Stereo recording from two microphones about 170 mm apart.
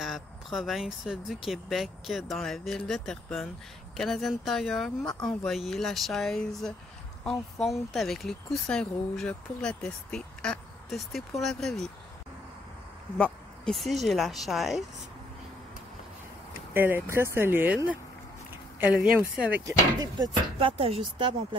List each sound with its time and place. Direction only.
0.0 s speech: centre (ahead or behind)
13.2 s speech: centre (ahead or behind)
16.7 s speech: 10° right (ahead or behind)
18.5 s a sound: 10° right (ahead or behind)
19.5 s speech: 20° right (ahead or behind)
20.5 s speech: 35° right (ahead or behind)